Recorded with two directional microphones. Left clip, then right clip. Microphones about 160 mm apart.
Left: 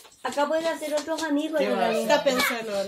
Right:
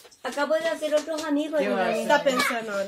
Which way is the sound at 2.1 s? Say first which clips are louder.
Right 2 dB; 25° right (ahead or behind).